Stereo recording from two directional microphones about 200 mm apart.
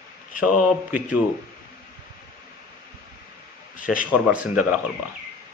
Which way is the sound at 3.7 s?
45° left (ahead or behind).